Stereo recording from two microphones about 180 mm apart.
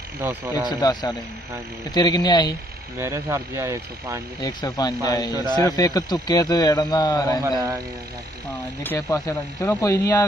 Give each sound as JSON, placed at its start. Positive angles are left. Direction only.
{"t": 0.2, "sound": "speech", "side_deg": -10}
{"t": 0.7, "sound": "a man's voice", "side_deg": 25}
{"t": 3.0, "sound": "speech", "side_deg": -15}
{"t": 4.4, "sound": "a man's voice", "side_deg": 25}
{"t": 7.5, "sound": "speech", "side_deg": -20}
{"t": 8.8, "sound": "speech", "side_deg": 15}